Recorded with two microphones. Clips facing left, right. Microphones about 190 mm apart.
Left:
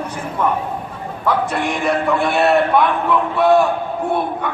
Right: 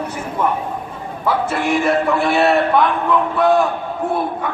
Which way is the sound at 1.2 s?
5° right (ahead or behind).